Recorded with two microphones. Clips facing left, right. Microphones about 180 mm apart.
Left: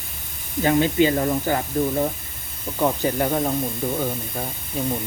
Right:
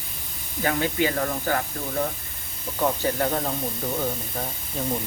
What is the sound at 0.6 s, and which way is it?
Speech, 20° left (ahead or behind).